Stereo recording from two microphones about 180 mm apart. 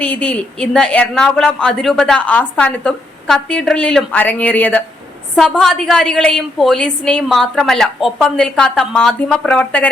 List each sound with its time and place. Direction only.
0.0 s a woman's voice: 5° left (ahead or behind)